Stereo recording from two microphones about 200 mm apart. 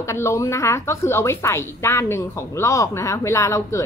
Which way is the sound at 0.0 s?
15° left (ahead or behind).